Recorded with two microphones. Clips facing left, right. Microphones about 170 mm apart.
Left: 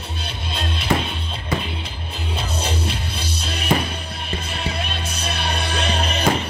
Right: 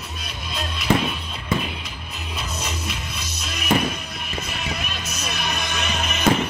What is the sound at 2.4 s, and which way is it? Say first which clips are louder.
Music: left 5 dB; 30° left (ahead or behind).